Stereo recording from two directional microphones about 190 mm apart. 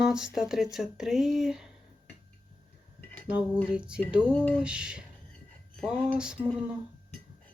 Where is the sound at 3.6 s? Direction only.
5° right (ahead or behind).